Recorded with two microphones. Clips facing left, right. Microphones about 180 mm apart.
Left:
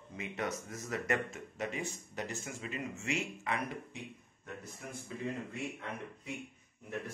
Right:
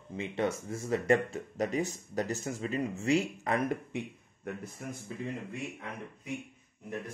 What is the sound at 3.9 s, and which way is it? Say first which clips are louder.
Speech: right 9 dB; 60° right (ahead or behind).